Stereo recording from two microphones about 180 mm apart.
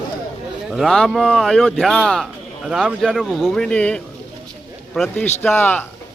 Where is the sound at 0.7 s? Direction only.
Centre (ahead or behind).